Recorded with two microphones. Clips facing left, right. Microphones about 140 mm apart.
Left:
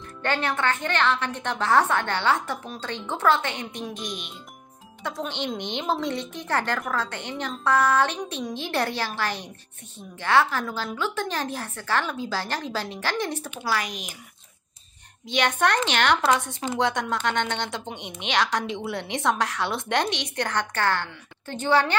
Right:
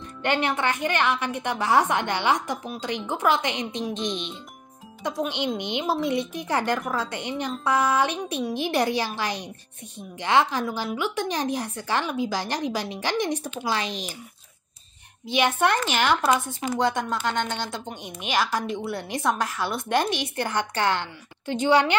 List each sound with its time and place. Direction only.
0.2 s a woman's voice: 15° right (ahead or behind)
5.2 s a woman's voice: 10° right (ahead or behind); by 14.1 s 30° right (ahead or behind)
15.2 s a woman's voice: 10° right (ahead or behind)